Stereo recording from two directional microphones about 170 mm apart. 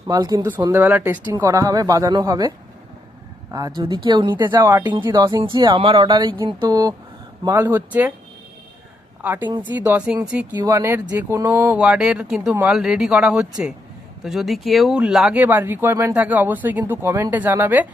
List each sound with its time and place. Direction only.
0.1 s speech: 20° right (ahead or behind)
3.5 s speech: 25° right (ahead or behind)
9.2 s speech: 10° right (ahead or behind)
10.5 s speech: 20° right (ahead or behind)